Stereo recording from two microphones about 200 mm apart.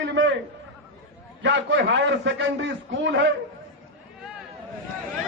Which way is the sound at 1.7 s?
60° right (ahead or behind).